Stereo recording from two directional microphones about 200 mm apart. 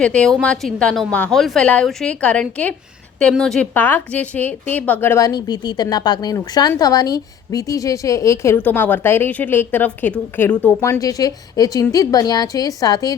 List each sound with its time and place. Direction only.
0.0 s a woman's voice: 5° left (ahead or behind)